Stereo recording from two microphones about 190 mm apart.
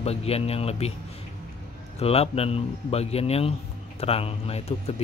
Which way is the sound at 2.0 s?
30° left (ahead or behind).